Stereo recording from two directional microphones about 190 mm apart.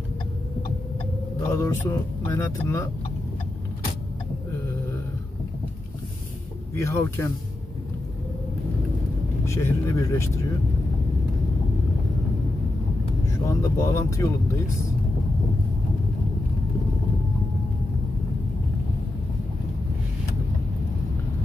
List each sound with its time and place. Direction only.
1.5 s speech: 15° left (ahead or behind)
6.8 s speech: 15° left (ahead or behind)
9.4 s speech: 15° left (ahead or behind)
13.5 s speech: 15° left (ahead or behind)